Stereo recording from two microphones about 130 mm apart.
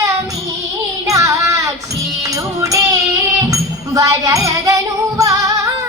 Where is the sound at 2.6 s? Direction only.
25° right (ahead or behind).